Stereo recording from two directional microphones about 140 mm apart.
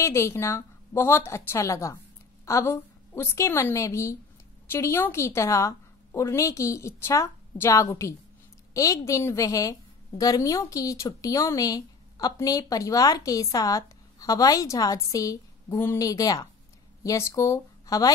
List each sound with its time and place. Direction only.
0.0 s a woman's voice: 20° left (ahead or behind)